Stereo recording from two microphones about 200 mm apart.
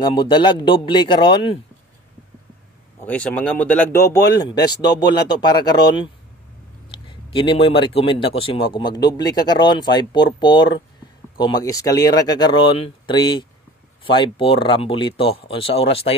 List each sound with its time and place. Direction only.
0.0 s a man's voice: 20° left (ahead or behind)
3.1 s speech: 5° left (ahead or behind)
7.1 s a man's voice: 25° left (ahead or behind)